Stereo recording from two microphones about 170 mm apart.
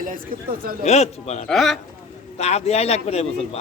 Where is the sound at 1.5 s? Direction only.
Centre (ahead or behind).